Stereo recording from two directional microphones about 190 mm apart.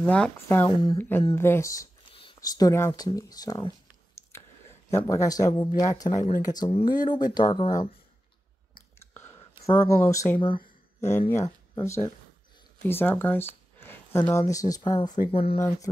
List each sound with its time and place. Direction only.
0.0 s speech: 10° left (ahead or behind)
3.2 s a sound: 20° left (ahead or behind)
4.9 s speech: 15° left (ahead or behind)
9.0 s whispering: 10° left (ahead or behind)
9.7 s speech: 15° left (ahead or behind)
10.6 s a sound: 35° left (ahead or behind)
11.4 s speech: 20° left (ahead or behind)